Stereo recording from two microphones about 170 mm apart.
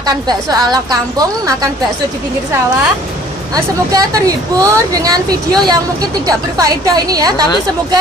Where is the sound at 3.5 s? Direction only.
20° right (ahead or behind).